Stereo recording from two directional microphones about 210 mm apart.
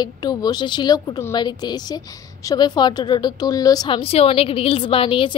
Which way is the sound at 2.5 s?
20° left (ahead or behind).